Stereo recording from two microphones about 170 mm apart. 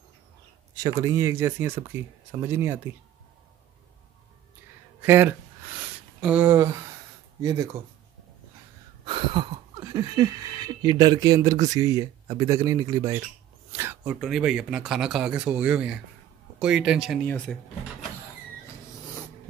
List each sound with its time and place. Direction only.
0.9 s speech: 20° right (ahead or behind)
5.0 s speech: 10° right (ahead or behind)
9.0 s speech: 30° right (ahead or behind)
13.7 s a sound: 15° right (ahead or behind)
14.2 s speech: centre (ahead or behind)